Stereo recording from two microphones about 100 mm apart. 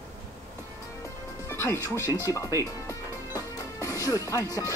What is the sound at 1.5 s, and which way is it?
Speech, 30° left (ahead or behind).